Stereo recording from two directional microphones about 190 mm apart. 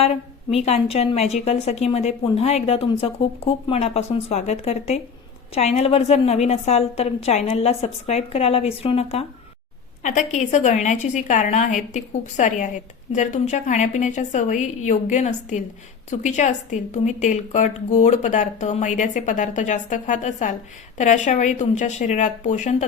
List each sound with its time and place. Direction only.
0.0 s a woman's voice: 35° left (ahead or behind)